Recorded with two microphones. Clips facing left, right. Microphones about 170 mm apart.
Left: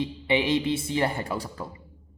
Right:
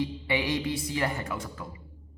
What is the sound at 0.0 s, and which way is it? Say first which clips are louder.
A man's voice: left 4 dB; 20° left (ahead or behind).